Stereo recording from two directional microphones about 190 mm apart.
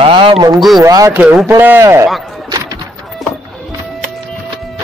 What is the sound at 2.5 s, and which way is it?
Music, 20° right (ahead or behind).